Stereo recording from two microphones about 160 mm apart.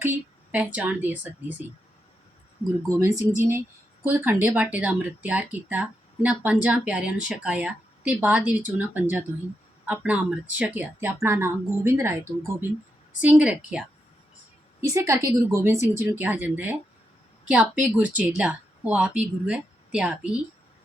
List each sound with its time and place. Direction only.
0.5 s speech: 10° right (ahead or behind)
3.0 s speech: 15° right (ahead or behind)
13.2 s speech: 10° right (ahead or behind)
14.8 s speech: 20° right (ahead or behind)